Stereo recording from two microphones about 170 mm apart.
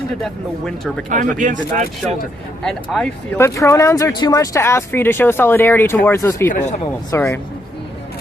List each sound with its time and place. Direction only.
0.2 s speech: centre (ahead or behind)
1.1 s speech: 50° right (ahead or behind)
2.6 s speech: 5° left (ahead or behind)
6.5 s speech: 45° left (ahead or behind)
7.1 s speech: 15° left (ahead or behind)